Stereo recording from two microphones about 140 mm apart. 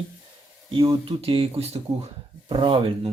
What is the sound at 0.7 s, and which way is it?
Speech, 40° right (ahead or behind).